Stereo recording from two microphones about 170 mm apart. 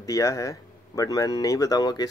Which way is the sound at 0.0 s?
20° left (ahead or behind).